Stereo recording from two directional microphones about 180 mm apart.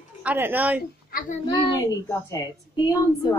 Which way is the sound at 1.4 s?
20° left (ahead or behind).